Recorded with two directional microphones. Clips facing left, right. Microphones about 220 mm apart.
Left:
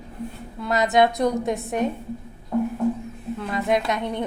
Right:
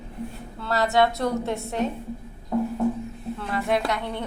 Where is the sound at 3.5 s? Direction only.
20° left (ahead or behind).